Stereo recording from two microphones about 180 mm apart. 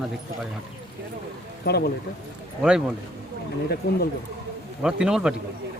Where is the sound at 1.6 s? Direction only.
65° left (ahead or behind).